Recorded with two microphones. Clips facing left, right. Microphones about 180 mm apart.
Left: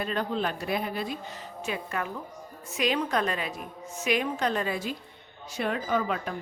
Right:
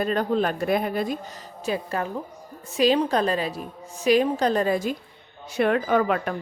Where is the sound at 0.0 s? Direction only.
45° right (ahead or behind).